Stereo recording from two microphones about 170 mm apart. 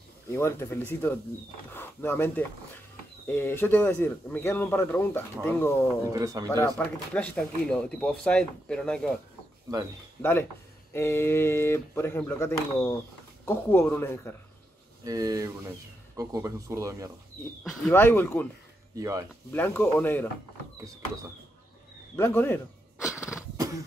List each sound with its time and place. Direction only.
0.3 s speech: 15° left (ahead or behind)
6.0 s speech: 20° right (ahead or behind)
6.6 s speech: 10° left (ahead or behind)
10.9 s speech: 15° left (ahead or behind)
15.0 s speech: 20° right (ahead or behind)
17.4 s speech: 10° left (ahead or behind)
18.9 s speech: 20° right (ahead or behind)
19.5 s speech: 10° left (ahead or behind)
22.1 s speech: 10° left (ahead or behind)
23.0 s a sound: 20° left (ahead or behind)